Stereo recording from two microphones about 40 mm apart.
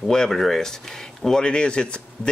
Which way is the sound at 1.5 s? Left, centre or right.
Left.